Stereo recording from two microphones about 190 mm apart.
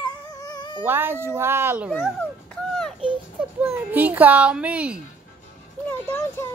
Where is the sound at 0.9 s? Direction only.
10° right (ahead or behind).